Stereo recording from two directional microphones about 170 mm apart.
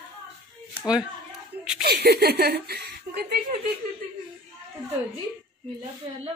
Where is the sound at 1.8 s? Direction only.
70° right (ahead or behind).